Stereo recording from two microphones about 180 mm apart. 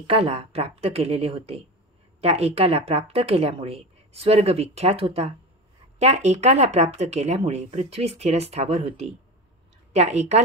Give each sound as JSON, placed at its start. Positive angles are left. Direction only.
{"t": 0.0, "sound": "a woman's voice", "side_deg": -30}